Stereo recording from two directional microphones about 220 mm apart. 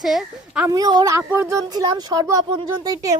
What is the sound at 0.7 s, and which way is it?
Speech, 15° right (ahead or behind).